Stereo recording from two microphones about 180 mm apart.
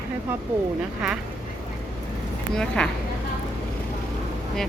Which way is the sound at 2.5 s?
5° left (ahead or behind).